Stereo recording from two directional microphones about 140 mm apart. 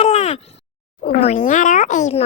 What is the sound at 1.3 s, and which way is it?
Speech, 65° left (ahead or behind).